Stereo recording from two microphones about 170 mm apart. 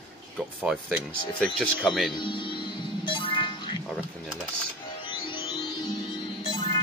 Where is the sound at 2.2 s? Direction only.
30° left (ahead or behind).